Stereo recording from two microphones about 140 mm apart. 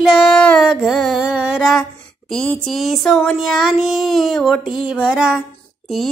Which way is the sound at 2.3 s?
5° left (ahead or behind).